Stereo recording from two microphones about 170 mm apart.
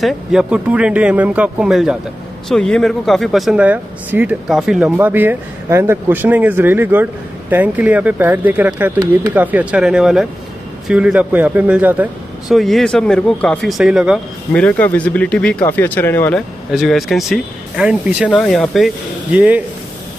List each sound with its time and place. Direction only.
0.0 s speech: 5° right (ahead or behind)
12.5 s speech: centre (ahead or behind)
14.5 s speech: 10° left (ahead or behind)
16.7 s speech: centre (ahead or behind)
19.3 s speech: 10° right (ahead or behind)